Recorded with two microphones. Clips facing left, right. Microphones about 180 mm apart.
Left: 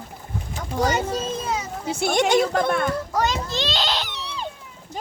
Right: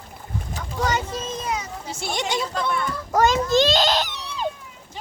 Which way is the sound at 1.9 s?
55° left (ahead or behind).